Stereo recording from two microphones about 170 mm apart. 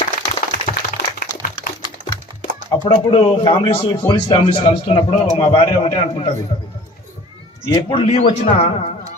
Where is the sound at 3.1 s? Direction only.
35° left (ahead or behind).